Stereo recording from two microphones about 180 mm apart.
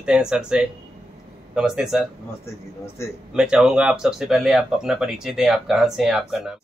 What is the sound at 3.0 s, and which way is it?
Speech, 15° left (ahead or behind).